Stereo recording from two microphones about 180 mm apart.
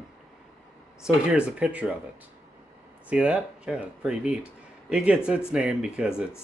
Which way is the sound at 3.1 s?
5° right (ahead or behind).